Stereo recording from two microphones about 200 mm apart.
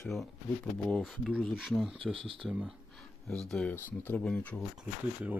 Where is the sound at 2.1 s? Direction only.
25° right (ahead or behind).